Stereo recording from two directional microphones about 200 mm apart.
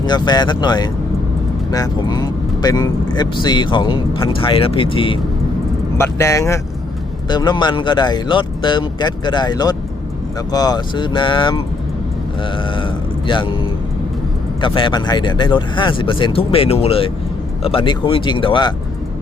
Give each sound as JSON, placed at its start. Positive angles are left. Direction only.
{"t": 0.0, "sound": "speech", "side_deg": 20}
{"t": 6.0, "sound": "speech", "side_deg": 15}